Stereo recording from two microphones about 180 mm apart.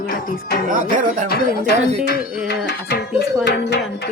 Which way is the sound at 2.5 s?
65° left (ahead or behind).